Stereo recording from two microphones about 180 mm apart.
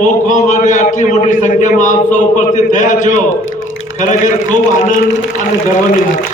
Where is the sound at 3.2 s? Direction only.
90° left.